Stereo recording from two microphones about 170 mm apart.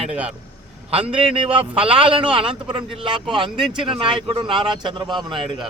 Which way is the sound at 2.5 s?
30° right (ahead or behind).